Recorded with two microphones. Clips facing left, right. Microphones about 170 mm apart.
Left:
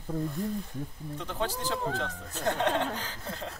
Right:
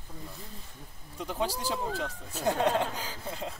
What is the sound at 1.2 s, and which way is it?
Speech, 10° right (ahead or behind).